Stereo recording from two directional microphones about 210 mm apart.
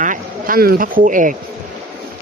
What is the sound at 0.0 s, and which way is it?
Speech, 40° right (ahead or behind).